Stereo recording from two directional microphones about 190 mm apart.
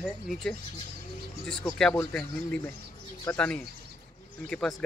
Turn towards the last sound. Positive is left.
turn(degrees=5)  # may be behind; listen again after turning